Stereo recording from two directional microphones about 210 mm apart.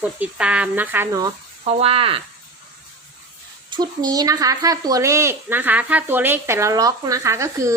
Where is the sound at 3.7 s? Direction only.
20° right (ahead or behind).